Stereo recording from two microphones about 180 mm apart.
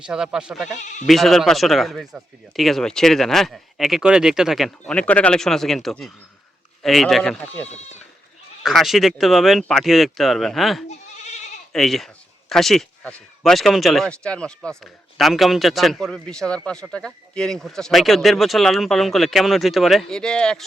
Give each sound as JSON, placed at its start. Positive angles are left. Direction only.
{"t": 0.0, "sound": "speech", "side_deg": -5}
{"t": 0.8, "sound": "speech", "side_deg": 40}
{"t": 1.0, "sound": "speech", "side_deg": 0}
{"t": 8.6, "sound": "speech", "side_deg": 0}